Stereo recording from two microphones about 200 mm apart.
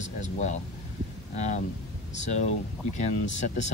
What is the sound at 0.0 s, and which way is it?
Speech, 35° left (ahead or behind).